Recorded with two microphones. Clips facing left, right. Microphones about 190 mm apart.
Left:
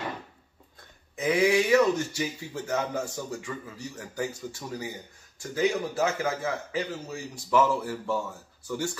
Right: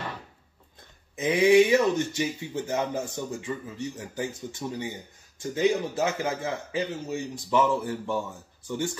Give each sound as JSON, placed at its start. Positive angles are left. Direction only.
{"t": 1.1, "sound": "speech", "side_deg": -20}